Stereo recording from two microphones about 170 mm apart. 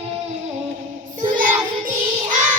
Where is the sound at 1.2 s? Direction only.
55° right (ahead or behind).